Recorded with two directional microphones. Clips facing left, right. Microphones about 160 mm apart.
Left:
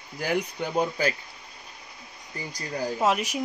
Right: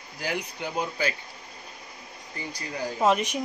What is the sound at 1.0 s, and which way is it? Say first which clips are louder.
Speech: left 2 dB; 45° left (ahead or behind).